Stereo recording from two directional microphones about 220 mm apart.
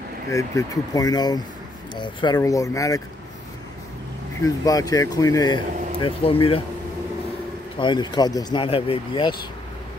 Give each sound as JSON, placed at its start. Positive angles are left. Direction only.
{"t": 0.3, "sound": "speech", "side_deg": 15}
{"t": 4.6, "sound": "speech", "side_deg": 15}
{"t": 7.7, "sound": "speech", "side_deg": 20}